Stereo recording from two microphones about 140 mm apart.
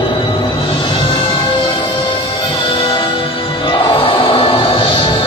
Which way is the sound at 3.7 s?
35° left (ahead or behind).